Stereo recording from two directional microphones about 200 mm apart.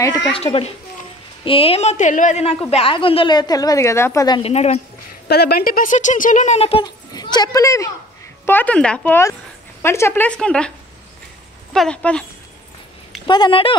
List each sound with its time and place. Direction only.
0.3 s a woman's voice: 30° left (ahead or behind)
4.4 s speech: 30° left (ahead or behind)
5.3 s speech: 50° left (ahead or behind); by 10.7 s 5° left (ahead or behind)
11.7 s speech: 5° left (ahead or behind)
13.3 s a woman's voice: 25° left (ahead or behind)